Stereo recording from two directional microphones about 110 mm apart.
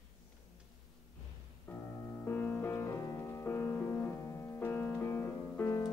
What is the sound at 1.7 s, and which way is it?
Music, 20° left (ahead or behind).